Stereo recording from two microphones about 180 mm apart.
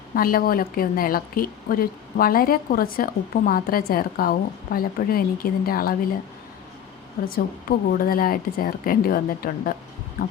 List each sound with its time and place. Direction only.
0.1 s a woman's voice: 55° left (ahead or behind)
7.9 s a woman's voice: 55° left (ahead or behind)
10.2 s a sound: 55° left (ahead or behind)